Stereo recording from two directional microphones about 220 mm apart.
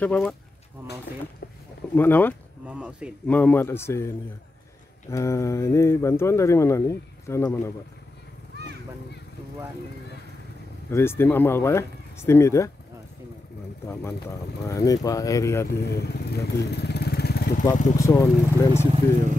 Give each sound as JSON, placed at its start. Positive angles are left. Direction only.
{"t": 0.0, "sound": "speech", "side_deg": 5}
{"t": 2.0, "sound": "speech", "side_deg": 10}
{"t": 2.6, "sound": "speech", "side_deg": -5}
{"t": 3.3, "sound": "speech", "side_deg": 5}
{"t": 5.1, "sound": "speech", "side_deg": 15}
{"t": 10.9, "sound": "speech", "side_deg": 10}
{"t": 14.7, "sound": "speech", "side_deg": 15}
{"t": 15.8, "sound": "speech", "side_deg": 45}
{"t": 17.6, "sound": "speech", "side_deg": 15}